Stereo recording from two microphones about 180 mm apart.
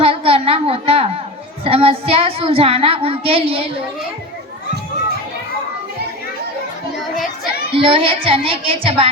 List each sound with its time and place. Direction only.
0.0 s a sound: 30° right (ahead or behind)
1.6 s child singing: 35° right (ahead or behind)
7.7 s speech: 30° right (ahead or behind)